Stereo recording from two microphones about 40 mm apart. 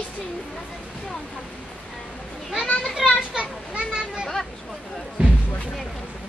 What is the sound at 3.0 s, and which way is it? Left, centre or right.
Speech, centre.